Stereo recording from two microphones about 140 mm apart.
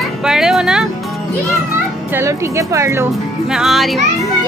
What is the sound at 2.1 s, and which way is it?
Speech, 20° right (ahead or behind).